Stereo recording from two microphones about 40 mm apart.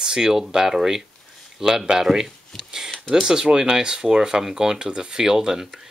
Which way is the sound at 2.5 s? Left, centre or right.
Centre.